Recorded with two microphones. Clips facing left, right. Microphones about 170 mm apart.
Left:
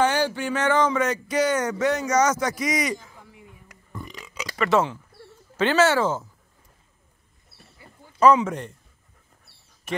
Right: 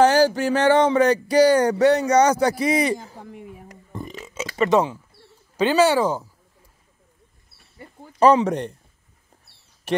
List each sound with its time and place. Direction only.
0.0 s speech: 40° right (ahead or behind)
3.2 s a woman's voice: 75° right (ahead or behind)
3.9 s burping: 25° right (ahead or behind)
4.6 s speech: 15° right (ahead or behind)
8.2 s speech: 35° right (ahead or behind)